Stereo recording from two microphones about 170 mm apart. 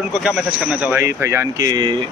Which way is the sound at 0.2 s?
5° right (ahead or behind).